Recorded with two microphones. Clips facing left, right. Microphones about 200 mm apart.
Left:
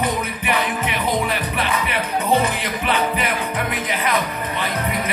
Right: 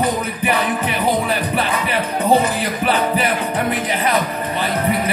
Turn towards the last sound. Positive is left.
turn(degrees=-35)  # may be behind; listen again after turning